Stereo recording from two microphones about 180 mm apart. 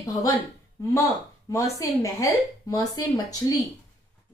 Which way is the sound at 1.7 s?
20° left (ahead or behind).